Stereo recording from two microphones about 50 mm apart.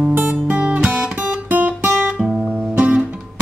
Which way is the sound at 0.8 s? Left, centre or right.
Centre.